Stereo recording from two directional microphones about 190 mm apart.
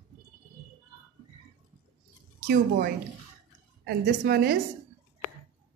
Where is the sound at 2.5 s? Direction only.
55° right (ahead or behind).